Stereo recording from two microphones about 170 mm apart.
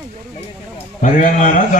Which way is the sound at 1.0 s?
50° left (ahead or behind).